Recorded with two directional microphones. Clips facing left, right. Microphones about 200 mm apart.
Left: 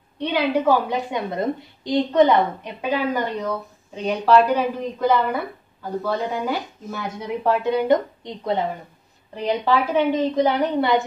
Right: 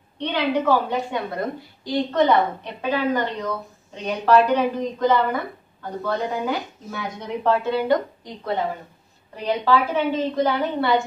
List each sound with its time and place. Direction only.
0.2 s a woman's voice: 10° left (ahead or behind)
7.6 s a woman's voice: 20° left (ahead or behind)
9.7 s a woman's voice: 15° left (ahead or behind)